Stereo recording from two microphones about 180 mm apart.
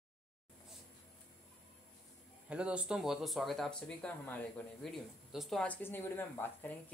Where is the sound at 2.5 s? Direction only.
5° right (ahead or behind).